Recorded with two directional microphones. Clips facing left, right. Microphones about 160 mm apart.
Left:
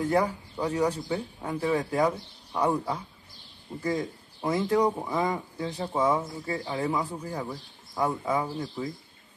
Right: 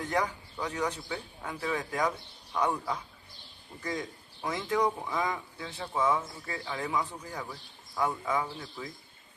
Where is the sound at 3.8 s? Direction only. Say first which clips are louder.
Left 6 dB; 30° left (ahead or behind).